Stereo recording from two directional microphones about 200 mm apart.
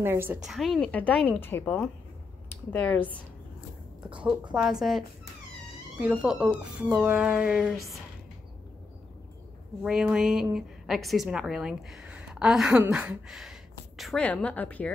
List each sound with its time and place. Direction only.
0.0 s a woman's voice: 10° right (ahead or behind); by 3.1 s 10° left (ahead or behind)
4.1 s a woman's voice: 5° right (ahead or behind)
9.8 s a woman's voice: 5° right (ahead or behind)